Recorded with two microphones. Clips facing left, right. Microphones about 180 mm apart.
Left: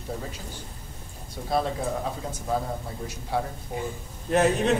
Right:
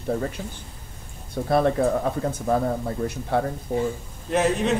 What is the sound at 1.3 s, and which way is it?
A man's voice, 60° right (ahead or behind).